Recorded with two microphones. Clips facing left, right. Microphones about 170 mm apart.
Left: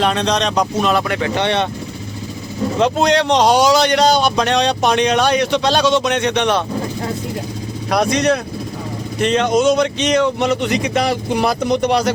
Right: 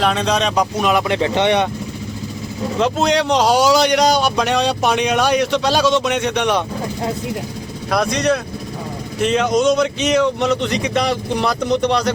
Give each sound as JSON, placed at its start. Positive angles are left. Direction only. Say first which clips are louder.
{"t": 0.0, "sound": "a man's voice", "louder": "even", "side_deg": -5}
{"t": 2.8, "sound": "a man's voice", "louder": "left 2 dB", "side_deg": -5}
{"t": 7.9, "sound": "speech", "louder": "left 2 dB", "side_deg": 0}